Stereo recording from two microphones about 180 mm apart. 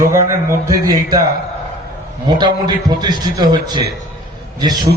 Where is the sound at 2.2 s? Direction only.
25° right (ahead or behind).